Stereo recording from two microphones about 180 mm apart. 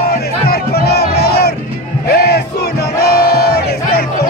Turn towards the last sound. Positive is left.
turn(degrees=65)  # may be behind; listen again after turning